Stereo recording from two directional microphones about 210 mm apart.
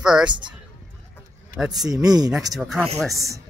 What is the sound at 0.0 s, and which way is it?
Speech, centre (ahead or behind).